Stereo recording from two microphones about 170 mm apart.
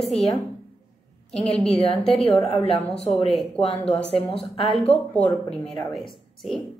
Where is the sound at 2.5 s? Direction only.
35° left (ahead or behind).